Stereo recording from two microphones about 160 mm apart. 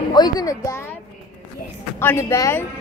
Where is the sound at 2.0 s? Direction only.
15° left (ahead or behind).